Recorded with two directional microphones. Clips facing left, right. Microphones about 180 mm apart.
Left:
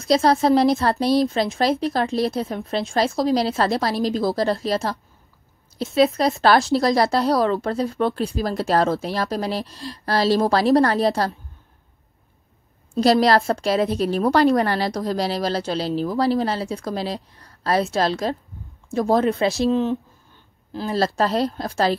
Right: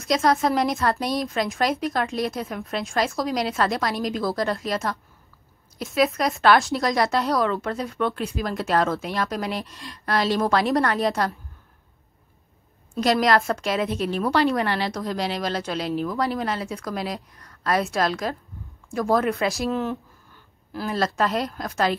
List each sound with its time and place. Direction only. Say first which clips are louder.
0.0 s a woman's voice: left 4 dB; 30° left (ahead or behind)
12.9 s a woman's voice: left 4 dB; 35° left (ahead or behind)